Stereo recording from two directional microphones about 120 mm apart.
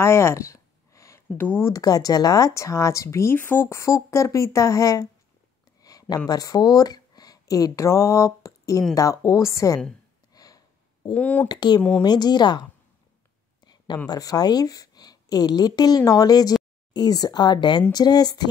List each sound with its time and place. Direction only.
0.0 s a sound: 20° left (ahead or behind)
1.7 s speech: 30° left (ahead or behind)
10.3 s a sound: 30° left (ahead or behind)
11.1 s speech: 10° left (ahead or behind)
11.4 s speech: 35° left (ahead or behind)
14.0 s speech: 30° left (ahead or behind)